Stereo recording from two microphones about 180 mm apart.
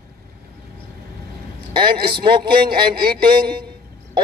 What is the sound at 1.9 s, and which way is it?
Speech, 60° right (ahead or behind).